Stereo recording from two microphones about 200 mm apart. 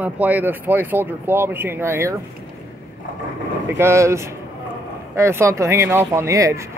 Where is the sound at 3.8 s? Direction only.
15° right (ahead or behind).